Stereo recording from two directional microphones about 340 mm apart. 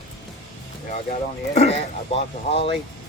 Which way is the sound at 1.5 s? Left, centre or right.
Centre.